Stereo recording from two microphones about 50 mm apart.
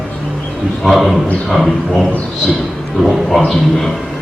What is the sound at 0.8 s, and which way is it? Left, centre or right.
A man's voice, centre.